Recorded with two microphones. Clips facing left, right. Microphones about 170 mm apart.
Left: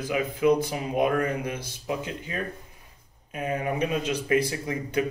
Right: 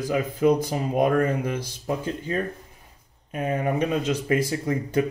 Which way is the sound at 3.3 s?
40° right (ahead or behind).